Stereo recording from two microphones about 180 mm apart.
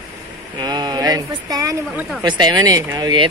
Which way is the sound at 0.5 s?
20° right (ahead or behind).